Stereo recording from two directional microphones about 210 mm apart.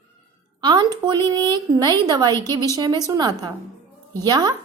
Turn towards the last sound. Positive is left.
turn(degrees=-20)  # may be behind; listen again after turning